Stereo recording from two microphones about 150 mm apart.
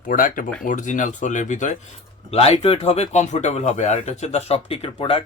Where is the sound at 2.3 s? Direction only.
45° left (ahead or behind).